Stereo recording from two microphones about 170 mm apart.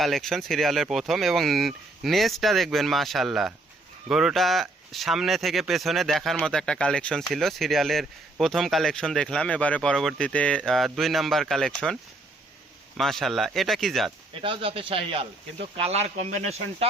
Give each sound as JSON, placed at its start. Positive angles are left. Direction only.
{"t": 0.0, "sound": "speech", "side_deg": 0}
{"t": 13.0, "sound": "speech", "side_deg": 0}
{"t": 14.4, "sound": "speech", "side_deg": -30}